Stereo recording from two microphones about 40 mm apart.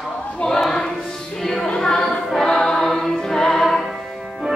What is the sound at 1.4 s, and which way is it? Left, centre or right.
Music, centre.